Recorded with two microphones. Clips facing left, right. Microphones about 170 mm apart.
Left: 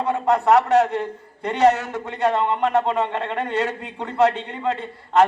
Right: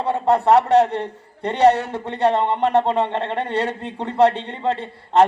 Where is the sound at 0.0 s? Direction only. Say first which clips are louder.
Right 2 dB; 30° right (ahead or behind).